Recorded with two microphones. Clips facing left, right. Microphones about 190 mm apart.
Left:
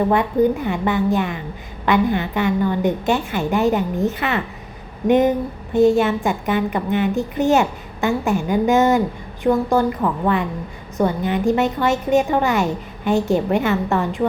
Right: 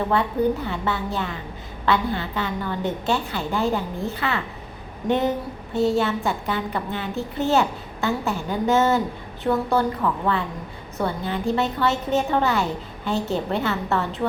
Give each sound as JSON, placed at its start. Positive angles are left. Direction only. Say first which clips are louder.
{"t": 0.1, "sound": "a woman's voice", "louder": "left 4 dB", "side_deg": 15}